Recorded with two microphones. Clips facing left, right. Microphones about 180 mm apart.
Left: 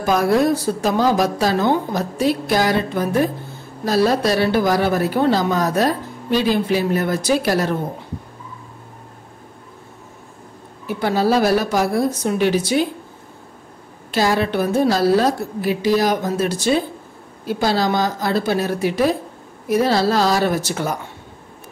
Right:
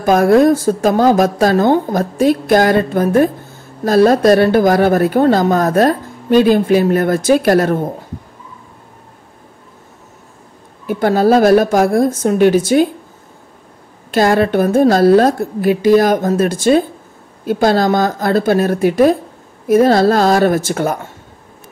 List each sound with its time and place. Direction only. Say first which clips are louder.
0.0 s a woman's voice: right 7 dB; 50° right (ahead or behind)
10.9 s a woman's voice: right 6 dB; 50° right (ahead or behind)
14.1 s a woman's voice: right 6 dB; 50° right (ahead or behind)